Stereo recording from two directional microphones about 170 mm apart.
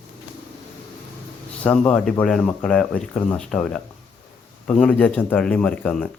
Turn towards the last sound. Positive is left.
turn(degrees=5)  # may be behind; listen again after turning